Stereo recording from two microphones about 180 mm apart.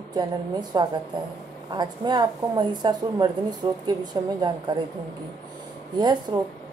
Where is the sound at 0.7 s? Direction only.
25° right (ahead or behind).